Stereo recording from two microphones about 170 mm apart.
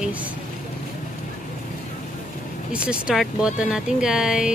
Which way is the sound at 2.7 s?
5° right (ahead or behind).